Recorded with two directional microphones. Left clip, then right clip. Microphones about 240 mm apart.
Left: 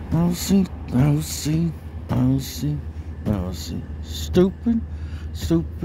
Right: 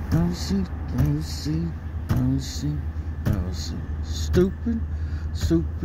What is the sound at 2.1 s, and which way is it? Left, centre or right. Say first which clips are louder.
Speech: left 5 dB; left.